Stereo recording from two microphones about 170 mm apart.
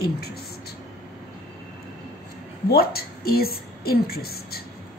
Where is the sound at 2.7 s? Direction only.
65° left (ahead or behind).